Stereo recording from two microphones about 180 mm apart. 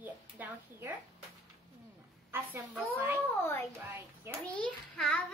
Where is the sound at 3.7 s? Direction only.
15° right (ahead or behind).